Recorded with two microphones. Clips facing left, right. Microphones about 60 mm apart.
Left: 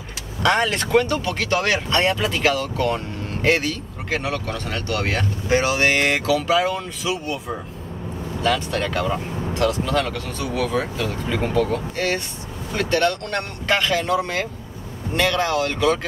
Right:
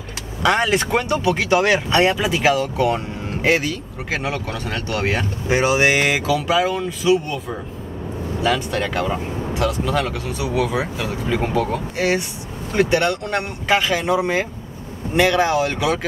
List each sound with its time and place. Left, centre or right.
0.4 s speech: centre